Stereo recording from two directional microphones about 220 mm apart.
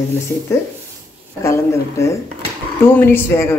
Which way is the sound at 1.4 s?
15° left (ahead or behind).